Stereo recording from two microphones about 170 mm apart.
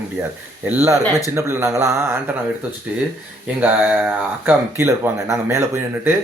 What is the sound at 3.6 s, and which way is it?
Speech, 10° right (ahead or behind).